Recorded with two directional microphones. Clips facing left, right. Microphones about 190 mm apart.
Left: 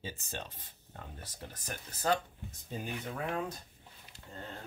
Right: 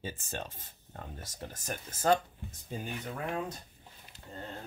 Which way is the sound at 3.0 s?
5° right (ahead or behind).